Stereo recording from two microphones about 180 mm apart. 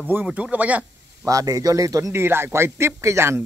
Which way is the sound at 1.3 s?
20° right (ahead or behind).